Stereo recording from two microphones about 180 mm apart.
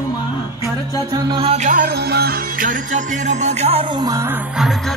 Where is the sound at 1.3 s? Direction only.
35° right (ahead or behind).